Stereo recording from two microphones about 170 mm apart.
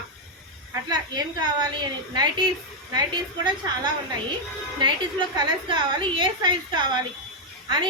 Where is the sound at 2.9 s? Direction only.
25° right (ahead or behind).